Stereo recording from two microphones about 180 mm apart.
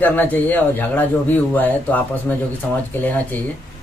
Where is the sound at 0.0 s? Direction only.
10° left (ahead or behind).